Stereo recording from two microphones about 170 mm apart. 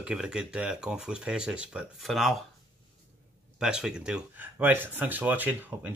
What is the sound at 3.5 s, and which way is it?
Speech, 5° right (ahead or behind).